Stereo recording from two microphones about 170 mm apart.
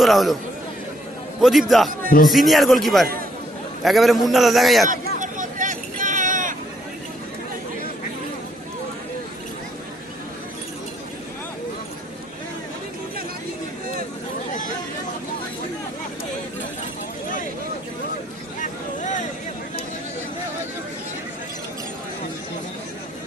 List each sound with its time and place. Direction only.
0.0 s a man's voice: centre (ahead or behind)
1.4 s a man's voice: centre (ahead or behind)
4.9 s vehicle: 50° right (ahead or behind)
18.6 s a sound: 45° left (ahead or behind)